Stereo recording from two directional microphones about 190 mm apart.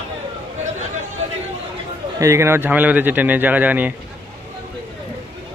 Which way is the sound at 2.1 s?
15° right (ahead or behind).